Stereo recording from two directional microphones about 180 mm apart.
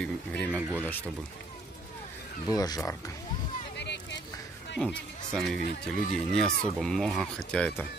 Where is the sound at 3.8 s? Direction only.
70° left (ahead or behind).